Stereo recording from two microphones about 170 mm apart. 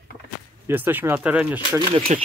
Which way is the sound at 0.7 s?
10° right (ahead or behind).